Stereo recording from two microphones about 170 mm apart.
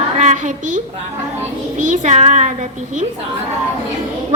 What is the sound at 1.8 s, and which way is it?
A woman's voice, 50° right (ahead or behind).